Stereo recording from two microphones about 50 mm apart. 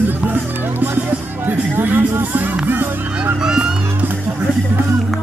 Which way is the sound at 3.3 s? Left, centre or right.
Centre.